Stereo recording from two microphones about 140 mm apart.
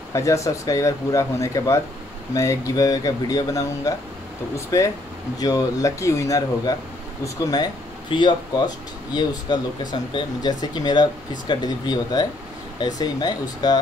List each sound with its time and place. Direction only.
0.1 s speech: 20° left (ahead or behind)